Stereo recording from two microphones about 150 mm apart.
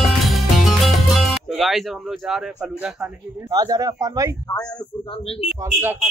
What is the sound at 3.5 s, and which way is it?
Speech, 25° right (ahead or behind).